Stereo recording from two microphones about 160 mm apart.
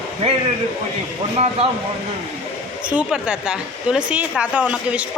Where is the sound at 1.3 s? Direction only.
40° right (ahead or behind).